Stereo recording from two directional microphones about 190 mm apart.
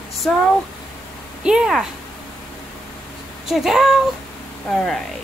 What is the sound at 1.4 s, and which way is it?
Speech, 5° right (ahead or behind).